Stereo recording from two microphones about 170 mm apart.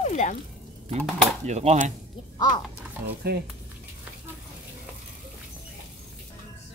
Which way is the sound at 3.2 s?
65° right (ahead or behind).